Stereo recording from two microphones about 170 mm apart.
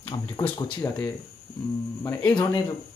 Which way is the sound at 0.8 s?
15° left (ahead or behind).